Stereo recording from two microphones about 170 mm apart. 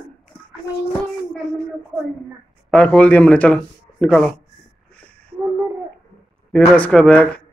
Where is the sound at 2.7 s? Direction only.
5° left (ahead or behind).